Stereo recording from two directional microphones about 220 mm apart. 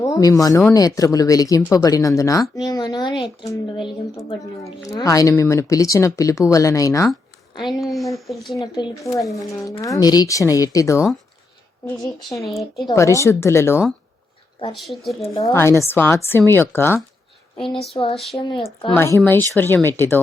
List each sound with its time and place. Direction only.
0.0 s speech: 15° left (ahead or behind)
7.6 s speech: centre (ahead or behind)
8.6 s speech: 20° left (ahead or behind)
12.5 s speech: centre (ahead or behind)
12.8 s speech: 15° left (ahead or behind)
14.8 s speech: centre (ahead or behind)
15.4 s speech: 15° left (ahead or behind)
17.7 s speech: 25° left (ahead or behind)
18.1 s speech: centre (ahead or behind)
18.3 s speech: 20° left (ahead or behind)
18.9 s speech: 10° left (ahead or behind)